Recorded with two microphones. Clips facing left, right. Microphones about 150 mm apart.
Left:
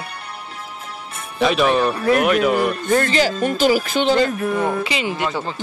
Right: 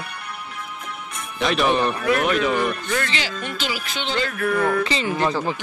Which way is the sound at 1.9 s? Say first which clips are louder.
Left 4 dB; 35° left (ahead or behind).